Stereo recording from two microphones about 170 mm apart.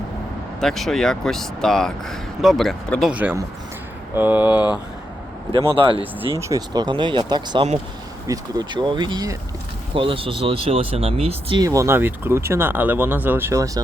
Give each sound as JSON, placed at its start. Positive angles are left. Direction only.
{"t": 0.6, "sound": "speech", "side_deg": 0}
{"t": 5.5, "sound": "speech", "side_deg": -30}
{"t": 6.4, "sound": "speech", "side_deg": -20}
{"t": 11.6, "sound": "speech", "side_deg": -20}